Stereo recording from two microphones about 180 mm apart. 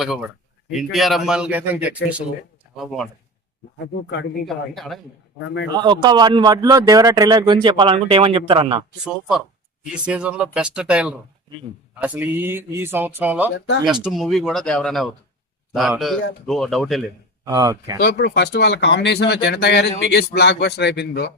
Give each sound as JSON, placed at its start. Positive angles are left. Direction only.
{"t": 0.0, "sound": "speech", "side_deg": -5}
{"t": 4.4, "sound": "speech", "side_deg": 0}
{"t": 5.7, "sound": "a man's voice", "side_deg": -25}
{"t": 9.8, "sound": "speech", "side_deg": -5}
{"t": 17.4, "sound": "speech", "side_deg": -20}
{"t": 18.0, "sound": "speech", "side_deg": 65}